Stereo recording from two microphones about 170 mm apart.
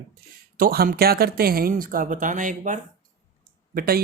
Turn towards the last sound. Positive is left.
turn(degrees=-60)  # may be behind; listen again after turning